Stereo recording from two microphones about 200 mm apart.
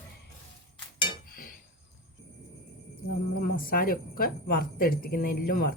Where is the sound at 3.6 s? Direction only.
45° left (ahead or behind).